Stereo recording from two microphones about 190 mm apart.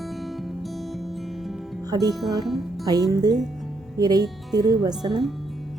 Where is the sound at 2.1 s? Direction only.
Centre (ahead or behind).